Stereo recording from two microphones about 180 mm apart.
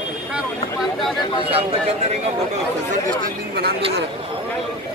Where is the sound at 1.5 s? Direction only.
35° right (ahead or behind).